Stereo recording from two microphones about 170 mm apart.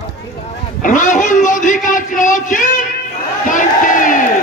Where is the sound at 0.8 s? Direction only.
50° left (ahead or behind).